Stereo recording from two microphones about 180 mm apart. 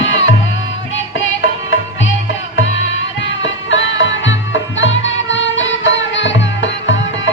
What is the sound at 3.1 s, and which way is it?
Music, 90° left.